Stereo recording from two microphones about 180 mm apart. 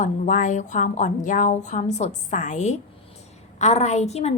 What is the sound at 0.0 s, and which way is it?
A woman's voice, 45° left (ahead or behind).